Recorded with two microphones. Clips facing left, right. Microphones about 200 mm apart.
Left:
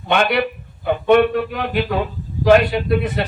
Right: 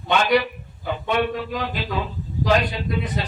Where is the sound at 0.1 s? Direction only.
60° left (ahead or behind).